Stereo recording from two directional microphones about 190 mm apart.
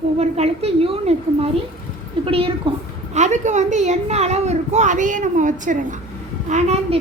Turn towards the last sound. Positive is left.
turn(degrees=-35)  # may be behind; listen again after turning